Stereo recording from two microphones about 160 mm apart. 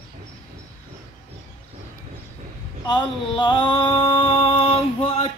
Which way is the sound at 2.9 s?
30° left (ahead or behind).